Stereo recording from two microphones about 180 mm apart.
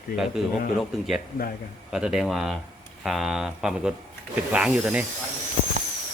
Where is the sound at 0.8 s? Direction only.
Centre (ahead or behind).